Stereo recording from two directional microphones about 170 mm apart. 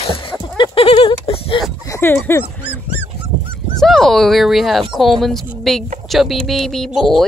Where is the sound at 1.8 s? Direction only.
15° left (ahead or behind).